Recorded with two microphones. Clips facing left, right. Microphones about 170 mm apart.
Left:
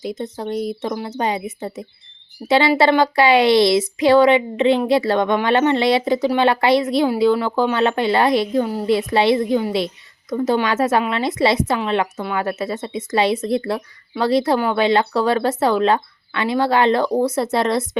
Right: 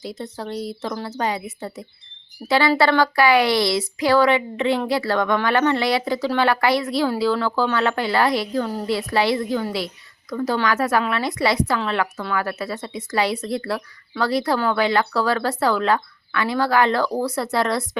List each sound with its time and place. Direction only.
0.0 s a woman's voice: 20° left (ahead or behind)